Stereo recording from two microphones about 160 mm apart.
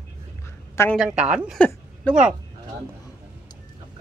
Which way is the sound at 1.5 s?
10° left (ahead or behind).